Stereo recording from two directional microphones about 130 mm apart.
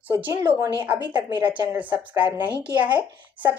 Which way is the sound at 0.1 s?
15° right (ahead or behind).